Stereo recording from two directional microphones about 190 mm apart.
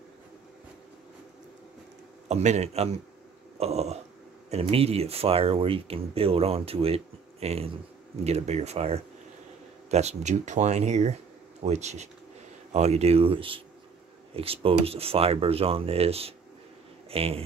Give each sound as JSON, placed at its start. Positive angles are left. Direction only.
{"t": 2.2, "sound": "speech", "side_deg": -35}
{"t": 3.5, "sound": "a sound", "side_deg": -35}
{"t": 4.5, "sound": "speech", "side_deg": -30}